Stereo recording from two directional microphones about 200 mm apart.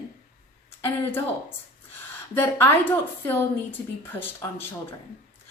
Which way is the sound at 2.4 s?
10° left (ahead or behind).